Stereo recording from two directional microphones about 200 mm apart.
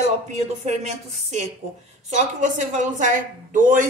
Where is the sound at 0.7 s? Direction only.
35° right (ahead or behind).